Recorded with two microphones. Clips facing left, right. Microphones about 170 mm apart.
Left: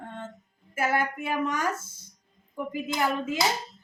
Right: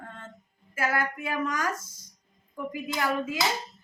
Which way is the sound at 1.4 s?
25° left (ahead or behind).